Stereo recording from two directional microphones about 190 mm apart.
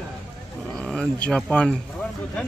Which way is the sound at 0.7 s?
5° left (ahead or behind).